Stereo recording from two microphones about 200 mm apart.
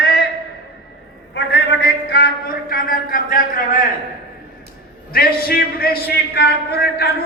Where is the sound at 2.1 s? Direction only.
50° left (ahead or behind).